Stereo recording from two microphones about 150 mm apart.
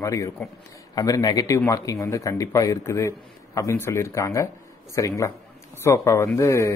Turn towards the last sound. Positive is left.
turn(degrees=20)  # may be behind; listen again after turning